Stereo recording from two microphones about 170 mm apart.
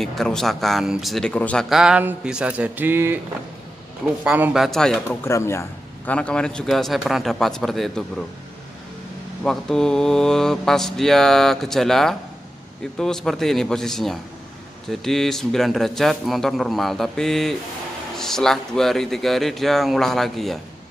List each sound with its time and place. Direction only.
0.0 s speech: centre (ahead or behind)
4.2 s speech: 10° right (ahead or behind)
4.6 s speech: 5° left (ahead or behind)
5.2 s speech: 15° left (ahead or behind)
9.4 s speech: 5° left (ahead or behind)